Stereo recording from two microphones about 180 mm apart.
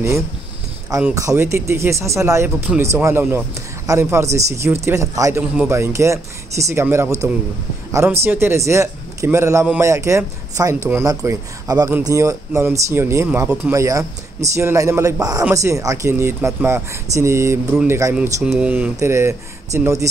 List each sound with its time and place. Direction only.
1.0 s a man's voice: 15° right (ahead or behind)
18.1 s a man's voice: 5° right (ahead or behind)